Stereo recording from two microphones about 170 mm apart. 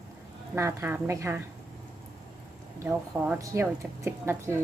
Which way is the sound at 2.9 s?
10° right (ahead or behind).